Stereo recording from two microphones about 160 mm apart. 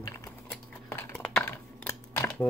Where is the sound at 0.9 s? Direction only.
5° left (ahead or behind).